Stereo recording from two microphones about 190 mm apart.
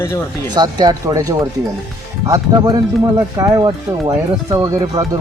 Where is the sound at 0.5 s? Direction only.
20° right (ahead or behind).